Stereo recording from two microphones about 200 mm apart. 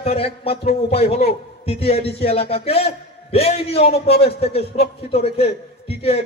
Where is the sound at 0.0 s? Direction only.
30° left (ahead or behind).